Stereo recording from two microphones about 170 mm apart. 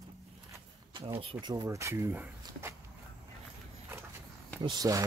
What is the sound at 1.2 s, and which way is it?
Speech, 30° right (ahead or behind).